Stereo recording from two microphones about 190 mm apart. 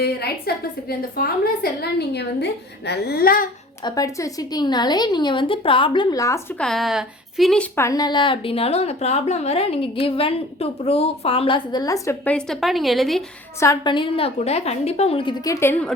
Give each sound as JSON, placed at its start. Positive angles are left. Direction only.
{"t": 0.0, "sound": "a woman's voice", "side_deg": 55}
{"t": 3.8, "sound": "a woman's voice", "side_deg": 20}
{"t": 6.6, "sound": "a woman's voice", "side_deg": 0}
{"t": 13.6, "sound": "a woman's voice", "side_deg": 20}
{"t": 15.6, "sound": "a woman's voice", "side_deg": 10}